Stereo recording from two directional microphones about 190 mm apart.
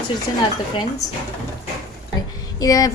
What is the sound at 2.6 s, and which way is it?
Speech, 20° left (ahead or behind).